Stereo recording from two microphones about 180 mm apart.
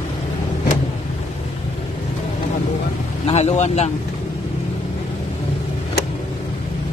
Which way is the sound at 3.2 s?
40° left (ahead or behind).